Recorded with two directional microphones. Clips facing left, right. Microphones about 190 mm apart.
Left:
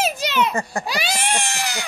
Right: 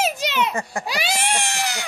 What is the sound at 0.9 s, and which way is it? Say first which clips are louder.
Baby cry: even; 25° right (ahead or behind).